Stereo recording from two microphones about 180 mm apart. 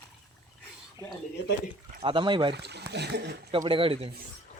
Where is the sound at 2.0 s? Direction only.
25° right (ahead or behind).